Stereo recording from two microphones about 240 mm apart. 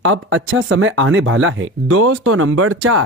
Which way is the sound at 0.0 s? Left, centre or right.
Right.